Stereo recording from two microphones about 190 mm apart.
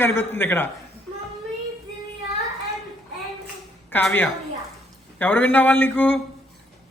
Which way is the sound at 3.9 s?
10° left (ahead or behind).